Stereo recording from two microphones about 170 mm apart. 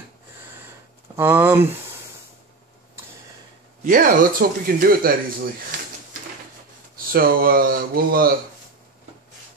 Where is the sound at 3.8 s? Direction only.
50° right (ahead or behind).